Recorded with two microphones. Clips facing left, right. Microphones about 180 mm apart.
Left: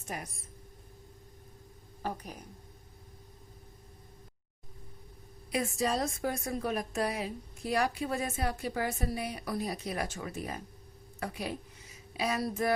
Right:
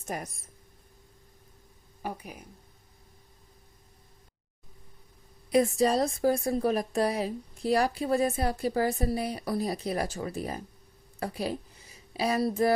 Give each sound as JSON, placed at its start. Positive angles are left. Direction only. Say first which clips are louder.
{"t": 0.1, "sound": "speech", "louder": "right 5 dB", "side_deg": -45}
{"t": 2.0, "sound": "speech", "louder": "right 1 dB", "side_deg": -10}
{"t": 5.5, "sound": "a woman's voice", "louder": "right 8 dB", "side_deg": -35}